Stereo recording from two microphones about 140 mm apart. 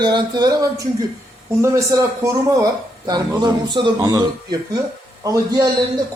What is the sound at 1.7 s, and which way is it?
Speech, 20° right (ahead or behind).